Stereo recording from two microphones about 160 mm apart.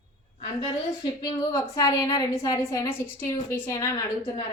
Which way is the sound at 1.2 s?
25° left (ahead or behind).